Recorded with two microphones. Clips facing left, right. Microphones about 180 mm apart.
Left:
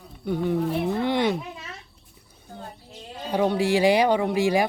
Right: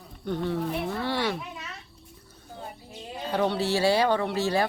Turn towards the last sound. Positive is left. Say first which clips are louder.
# left 4 dB
turn(degrees=15)  # may be behind; listen again after turning